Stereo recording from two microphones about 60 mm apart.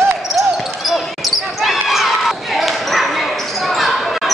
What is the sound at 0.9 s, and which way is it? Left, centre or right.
Basketball bounce, centre.